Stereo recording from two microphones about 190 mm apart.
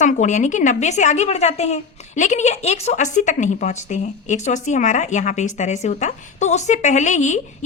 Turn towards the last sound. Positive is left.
turn(degrees=40)  # may be behind; listen again after turning